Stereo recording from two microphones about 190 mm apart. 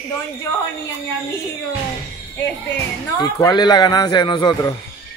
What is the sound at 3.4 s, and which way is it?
Speech, 20° left (ahead or behind).